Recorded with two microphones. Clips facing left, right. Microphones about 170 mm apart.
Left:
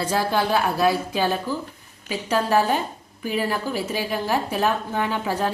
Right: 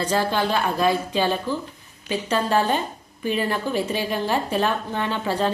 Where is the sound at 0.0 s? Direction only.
10° left (ahead or behind).